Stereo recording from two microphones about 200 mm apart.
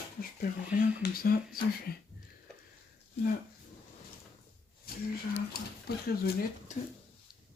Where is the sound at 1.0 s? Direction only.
50° left (ahead or behind).